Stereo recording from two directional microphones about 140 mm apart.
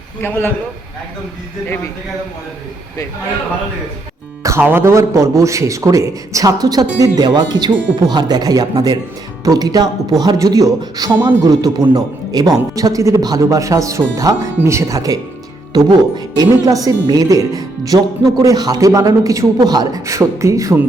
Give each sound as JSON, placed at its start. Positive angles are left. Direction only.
{"t": 0.2, "sound": "a man's voice", "side_deg": 15}
{"t": 4.4, "sound": "a woman's voice", "side_deg": -15}